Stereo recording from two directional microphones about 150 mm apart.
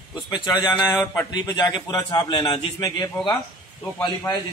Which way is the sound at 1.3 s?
25° left (ahead or behind).